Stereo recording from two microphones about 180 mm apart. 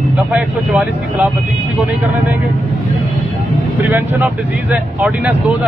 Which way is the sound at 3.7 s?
10° right (ahead or behind).